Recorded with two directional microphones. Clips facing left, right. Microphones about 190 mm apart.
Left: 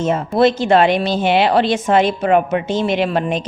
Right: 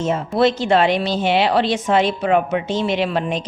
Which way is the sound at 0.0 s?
50° left (ahead or behind).